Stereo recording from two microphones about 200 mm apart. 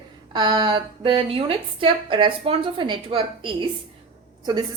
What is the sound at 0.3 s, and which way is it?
A woman's voice, 20° right (ahead or behind).